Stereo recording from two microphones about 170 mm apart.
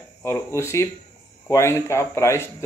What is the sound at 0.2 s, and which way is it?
Speech, 15° left (ahead or behind).